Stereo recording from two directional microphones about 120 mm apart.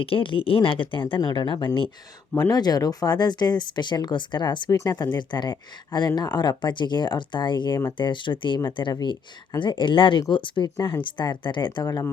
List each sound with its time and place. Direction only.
0.0 s speech: 45° left (ahead or behind)
2.3 s speech: 35° left (ahead or behind)